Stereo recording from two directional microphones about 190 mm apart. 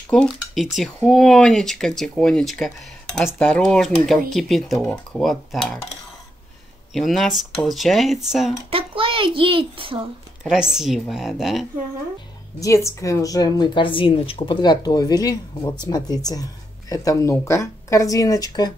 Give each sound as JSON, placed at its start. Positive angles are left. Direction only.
{"t": 0.1, "sound": "speech", "side_deg": 5}
{"t": 6.9, "sound": "speech", "side_deg": 0}
{"t": 8.6, "sound": "a child's voice", "side_deg": -30}
{"t": 10.4, "sound": "speech", "side_deg": -5}
{"t": 12.5, "sound": "a woman's voice", "side_deg": 15}